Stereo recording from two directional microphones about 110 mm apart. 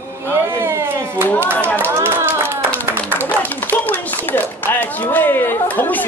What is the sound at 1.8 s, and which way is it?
Clapping, 20° right (ahead or behind).